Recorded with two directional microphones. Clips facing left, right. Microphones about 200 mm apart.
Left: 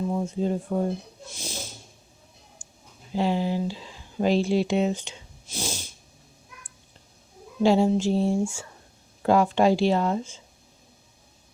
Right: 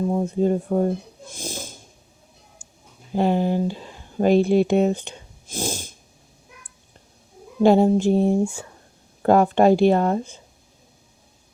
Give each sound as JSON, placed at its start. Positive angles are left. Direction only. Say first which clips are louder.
{"t": 0.3, "sound": "speech", "louder": "right 6 dB", "side_deg": -50}
{"t": 3.2, "sound": "speech", "louder": "right 5 dB", "side_deg": -55}
{"t": 7.6, "sound": "speech", "louder": "right 5 dB", "side_deg": -55}